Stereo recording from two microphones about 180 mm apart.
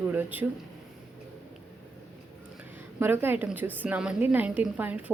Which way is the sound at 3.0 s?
10° right (ahead or behind).